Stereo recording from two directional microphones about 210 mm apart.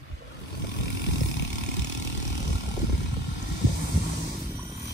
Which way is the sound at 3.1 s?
35° left (ahead or behind).